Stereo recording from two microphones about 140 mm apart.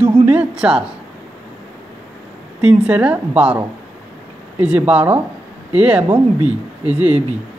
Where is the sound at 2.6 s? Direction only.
10° right (ahead or behind).